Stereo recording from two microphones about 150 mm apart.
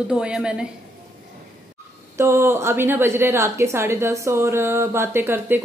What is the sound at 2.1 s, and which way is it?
A woman's voice, 15° right (ahead or behind).